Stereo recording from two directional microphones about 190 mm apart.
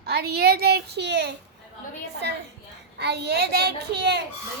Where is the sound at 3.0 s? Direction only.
60° right (ahead or behind).